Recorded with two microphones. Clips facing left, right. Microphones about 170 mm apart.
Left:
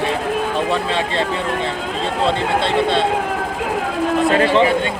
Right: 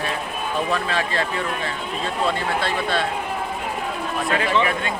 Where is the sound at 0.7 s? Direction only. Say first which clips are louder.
Left 4 dB; 25° left (ahead or behind).